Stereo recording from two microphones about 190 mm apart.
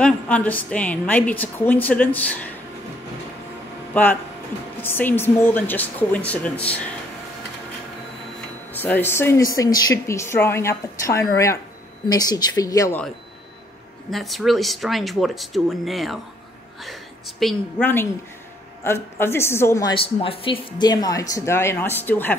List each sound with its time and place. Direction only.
0.0 s a woman's voice: 5° left (ahead or behind)
3.9 s a woman's voice: 10° left (ahead or behind)
8.7 s a woman's voice: 10° left (ahead or behind)
14.1 s speech: centre (ahead or behind)
17.4 s a woman's voice: 5° left (ahead or behind)
19.9 s a woman's voice: 30° left (ahead or behind); by 22.3 s 10° left (ahead or behind)